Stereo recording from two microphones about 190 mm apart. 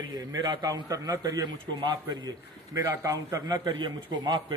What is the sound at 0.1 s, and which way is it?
A man's voice, 20° right (ahead or behind).